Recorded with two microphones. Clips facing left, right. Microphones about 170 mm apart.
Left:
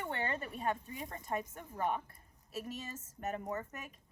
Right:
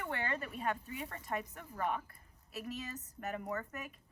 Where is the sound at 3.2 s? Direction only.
35° left (ahead or behind).